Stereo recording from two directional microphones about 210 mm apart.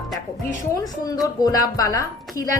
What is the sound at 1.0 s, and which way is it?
A woman's voice, 15° left (ahead or behind).